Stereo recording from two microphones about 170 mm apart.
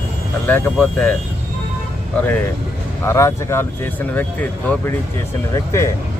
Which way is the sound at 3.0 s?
15° left (ahead or behind).